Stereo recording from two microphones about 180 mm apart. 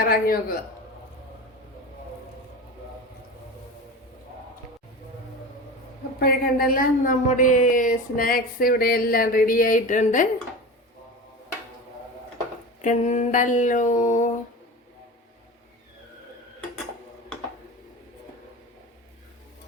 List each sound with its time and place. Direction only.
0.0 s a man's voice: 55° left (ahead or behind)
6.1 s speech: 55° left (ahead or behind)
12.8 s speech: 40° left (ahead or behind)